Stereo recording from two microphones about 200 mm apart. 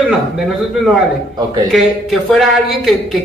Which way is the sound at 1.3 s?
20° right (ahead or behind).